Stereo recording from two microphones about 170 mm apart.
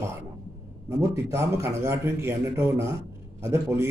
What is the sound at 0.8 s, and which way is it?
Speech, 15° right (ahead or behind).